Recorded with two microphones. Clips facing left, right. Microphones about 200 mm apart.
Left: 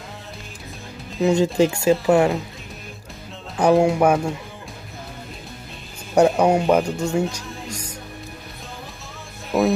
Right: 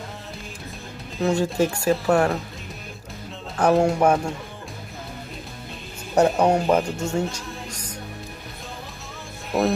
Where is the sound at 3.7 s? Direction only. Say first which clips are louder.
Left 2 dB; 5° left (ahead or behind).